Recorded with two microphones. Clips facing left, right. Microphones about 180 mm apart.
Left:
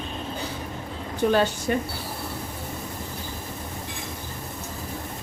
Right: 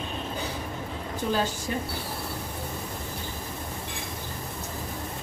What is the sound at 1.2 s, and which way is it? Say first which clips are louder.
Speech: left 7 dB; 60° left (ahead or behind).